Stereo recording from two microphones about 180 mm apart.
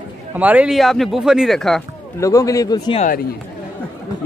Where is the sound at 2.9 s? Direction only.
50° left (ahead or behind).